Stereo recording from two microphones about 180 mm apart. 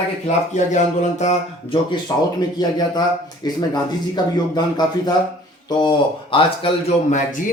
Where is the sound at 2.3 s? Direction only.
20° left (ahead or behind).